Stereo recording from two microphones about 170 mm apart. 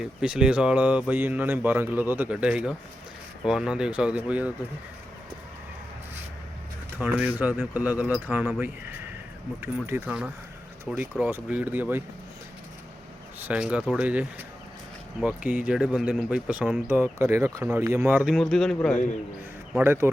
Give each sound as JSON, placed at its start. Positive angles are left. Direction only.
{"t": 0.0, "sound": "speech", "side_deg": -5}
{"t": 7.0, "sound": "speech", "side_deg": -10}
{"t": 13.4, "sound": "speech", "side_deg": -5}
{"t": 19.7, "sound": "speech", "side_deg": -15}